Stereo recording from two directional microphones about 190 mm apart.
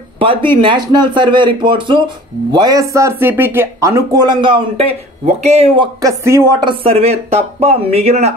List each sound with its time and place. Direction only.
0.2 s speech: 25° right (ahead or behind)
6.0 s speech: 15° right (ahead or behind)
6.5 s speech: 25° right (ahead or behind)